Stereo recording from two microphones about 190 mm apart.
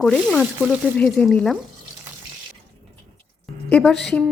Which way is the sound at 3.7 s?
5° left (ahead or behind).